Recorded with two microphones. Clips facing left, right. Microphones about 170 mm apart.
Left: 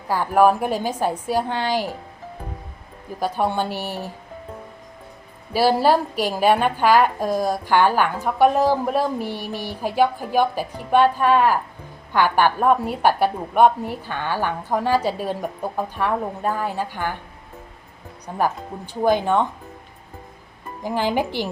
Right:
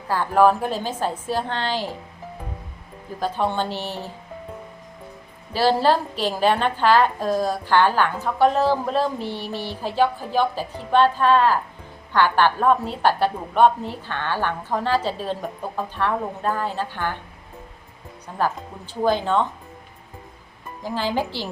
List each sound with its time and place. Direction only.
0.1 s a woman's voice: 10° left (ahead or behind)
3.2 s a woman's voice: 10° left (ahead or behind)
5.5 s a woman's voice: 10° left (ahead or behind)
18.3 s a woman's voice: 10° left (ahead or behind)
20.8 s a woman's voice: 15° left (ahead or behind)